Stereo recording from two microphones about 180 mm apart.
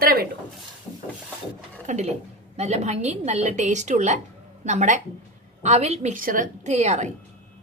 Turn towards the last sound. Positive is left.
turn(degrees=-40)  # may be behind; listen again after turning